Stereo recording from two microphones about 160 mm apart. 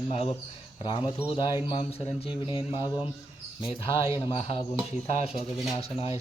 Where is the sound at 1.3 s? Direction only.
30° left (ahead or behind).